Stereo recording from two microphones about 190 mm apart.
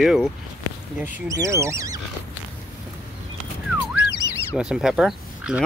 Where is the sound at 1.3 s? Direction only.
15° right (ahead or behind).